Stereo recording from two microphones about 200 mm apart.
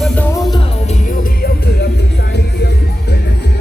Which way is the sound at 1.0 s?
50° left (ahead or behind).